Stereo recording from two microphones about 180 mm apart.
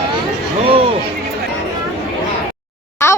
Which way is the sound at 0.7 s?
30° right (ahead or behind).